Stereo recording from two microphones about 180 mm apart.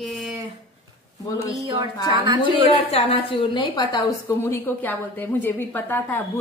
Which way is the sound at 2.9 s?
30° left (ahead or behind).